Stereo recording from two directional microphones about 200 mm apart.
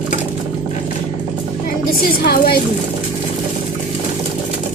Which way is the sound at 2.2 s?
50° left (ahead or behind).